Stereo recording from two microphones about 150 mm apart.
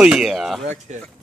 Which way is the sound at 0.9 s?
50° right (ahead or behind).